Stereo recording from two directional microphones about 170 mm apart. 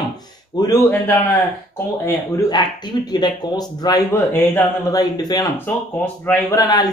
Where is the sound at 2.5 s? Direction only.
25° left (ahead or behind).